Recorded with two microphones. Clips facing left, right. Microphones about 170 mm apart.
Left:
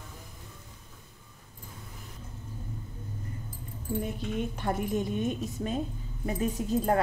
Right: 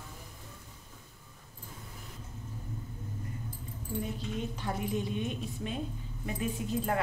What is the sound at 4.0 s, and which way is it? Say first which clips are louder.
A woman's voice: left 3 dB; 55° left (ahead or behind).